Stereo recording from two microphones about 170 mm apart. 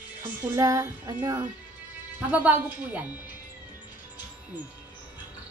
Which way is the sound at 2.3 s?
10° right (ahead or behind).